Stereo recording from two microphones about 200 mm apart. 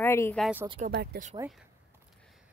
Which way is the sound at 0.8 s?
50° right (ahead or behind).